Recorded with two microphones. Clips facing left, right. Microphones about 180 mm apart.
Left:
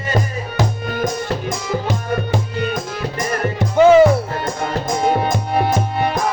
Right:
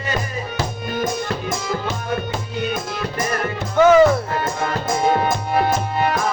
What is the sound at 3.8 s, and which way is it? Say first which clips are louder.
Music: left 2 dB; 25° left (ahead or behind).